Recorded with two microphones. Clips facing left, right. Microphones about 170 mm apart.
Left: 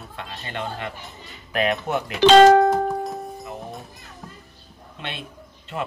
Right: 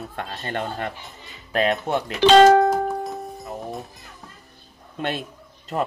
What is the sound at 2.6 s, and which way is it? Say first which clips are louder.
Music: left 1 dB; centre (ahead or behind).